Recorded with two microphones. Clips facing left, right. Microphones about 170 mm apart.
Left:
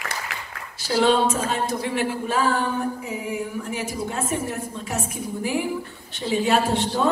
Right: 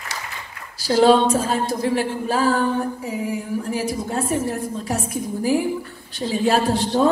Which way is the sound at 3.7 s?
35° right (ahead or behind).